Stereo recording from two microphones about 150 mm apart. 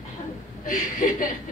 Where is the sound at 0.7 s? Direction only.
60° left (ahead or behind).